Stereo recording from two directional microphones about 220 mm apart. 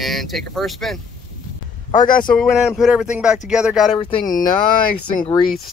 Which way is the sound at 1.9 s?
35° left (ahead or behind).